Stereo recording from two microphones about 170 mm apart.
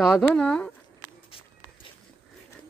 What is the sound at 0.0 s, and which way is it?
Speech, 5° left (ahead or behind).